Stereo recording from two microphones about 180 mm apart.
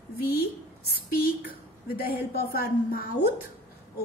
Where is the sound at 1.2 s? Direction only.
55° left (ahead or behind).